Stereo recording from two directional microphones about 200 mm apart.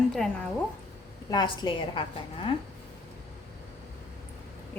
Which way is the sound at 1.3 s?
20° left (ahead or behind).